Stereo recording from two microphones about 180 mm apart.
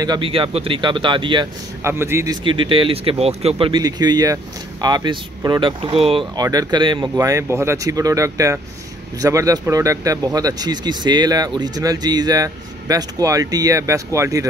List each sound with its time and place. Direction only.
0.0 s speech: 25° right (ahead or behind)
1.8 s speech: 15° right (ahead or behind)
2.4 s speech: 30° right (ahead or behind)